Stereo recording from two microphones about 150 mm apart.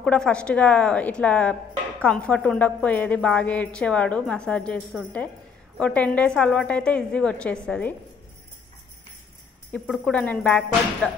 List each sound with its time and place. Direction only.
0.0 s a woman's voice: 5° left (ahead or behind)
9.7 s speech: 5° left (ahead or behind)